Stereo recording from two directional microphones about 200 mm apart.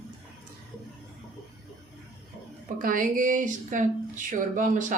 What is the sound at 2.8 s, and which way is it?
Speech, 45° right (ahead or behind).